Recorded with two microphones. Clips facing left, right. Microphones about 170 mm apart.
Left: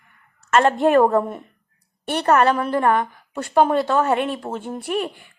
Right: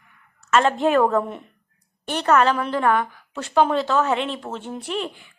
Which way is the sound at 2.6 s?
45° left (ahead or behind).